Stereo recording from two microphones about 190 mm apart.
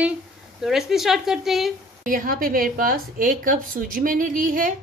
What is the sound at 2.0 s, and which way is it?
A woman's voice, 45° right (ahead or behind).